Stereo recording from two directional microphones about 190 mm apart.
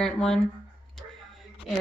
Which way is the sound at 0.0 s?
5° left (ahead or behind).